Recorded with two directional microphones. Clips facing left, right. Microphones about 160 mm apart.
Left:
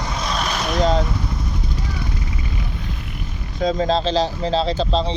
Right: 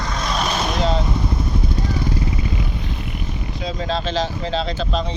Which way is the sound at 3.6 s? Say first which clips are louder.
Left 7 dB; 45° left (ahead or behind).